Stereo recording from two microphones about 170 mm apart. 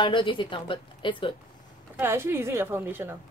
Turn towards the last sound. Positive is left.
turn(degrees=-15)  # may be behind; listen again after turning